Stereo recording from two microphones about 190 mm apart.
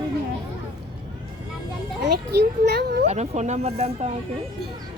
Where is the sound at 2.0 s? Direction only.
60° right (ahead or behind).